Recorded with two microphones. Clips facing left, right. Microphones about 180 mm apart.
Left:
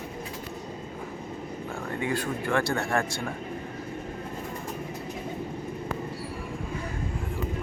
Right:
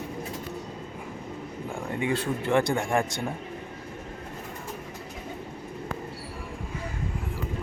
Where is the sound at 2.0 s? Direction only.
25° right (ahead or behind).